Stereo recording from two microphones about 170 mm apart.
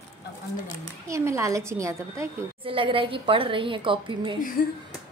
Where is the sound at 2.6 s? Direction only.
30° right (ahead or behind).